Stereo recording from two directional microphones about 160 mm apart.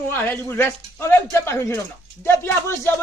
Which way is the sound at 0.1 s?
15° left (ahead or behind).